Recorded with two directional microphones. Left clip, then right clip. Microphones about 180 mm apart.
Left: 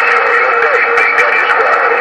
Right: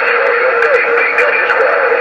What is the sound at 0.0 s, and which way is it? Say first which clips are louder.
Music: left 1 dB; 45° left (ahead or behind).